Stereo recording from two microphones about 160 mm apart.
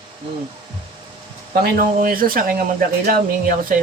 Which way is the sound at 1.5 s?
70° right (ahead or behind).